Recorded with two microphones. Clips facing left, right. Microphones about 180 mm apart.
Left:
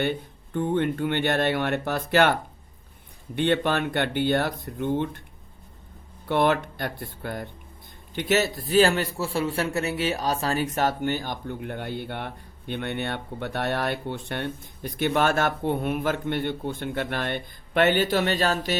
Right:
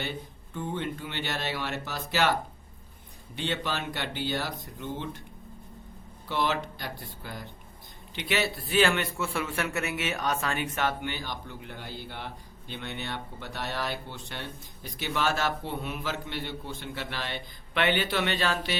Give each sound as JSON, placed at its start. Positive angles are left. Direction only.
{"t": 0.0, "sound": "speech", "side_deg": 60}
{"t": 3.3, "sound": "speech", "side_deg": 55}
{"t": 6.2, "sound": "speech", "side_deg": 55}
{"t": 8.1, "sound": "a man's voice", "side_deg": 45}